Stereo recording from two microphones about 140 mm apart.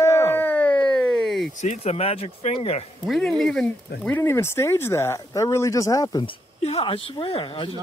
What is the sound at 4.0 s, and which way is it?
Speech, 15° left (ahead or behind).